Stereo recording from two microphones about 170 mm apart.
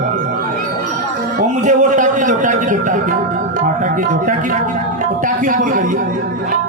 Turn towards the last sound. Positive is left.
turn(degrees=-50)  # may be behind; listen again after turning